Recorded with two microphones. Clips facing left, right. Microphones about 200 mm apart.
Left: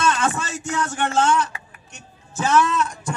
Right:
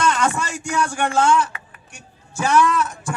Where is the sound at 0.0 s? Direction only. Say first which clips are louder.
Right 2 dB; 15° right (ahead or behind).